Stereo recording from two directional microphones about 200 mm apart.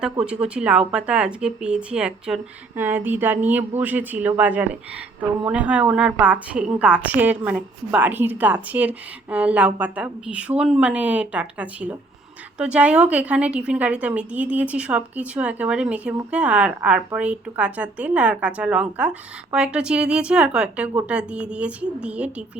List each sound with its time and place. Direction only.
0.0 s a woman's voice: 5° right (ahead or behind)